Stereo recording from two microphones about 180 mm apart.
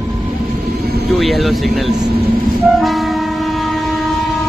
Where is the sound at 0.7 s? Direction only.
60° right (ahead or behind).